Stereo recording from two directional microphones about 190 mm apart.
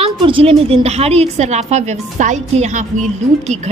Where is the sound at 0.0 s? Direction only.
30° right (ahead or behind).